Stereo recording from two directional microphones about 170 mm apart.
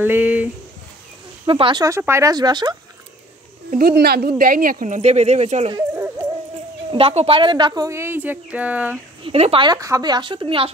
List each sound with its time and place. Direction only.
0.0 s speech: 10° right (ahead or behind)
1.4 s a woman's voice: 30° right (ahead or behind)
3.7 s speech: 65° right (ahead or behind)
4.4 s speech: 55° right (ahead or behind); by 5.7 s 40° right (ahead or behind)
6.9 s a woman's voice: 35° right (ahead or behind); by 9.0 s 10° right (ahead or behind)
9.2 s a woman's voice: 35° right (ahead or behind)